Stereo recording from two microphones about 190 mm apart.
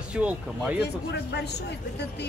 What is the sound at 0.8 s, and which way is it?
Speech, 60° left (ahead or behind).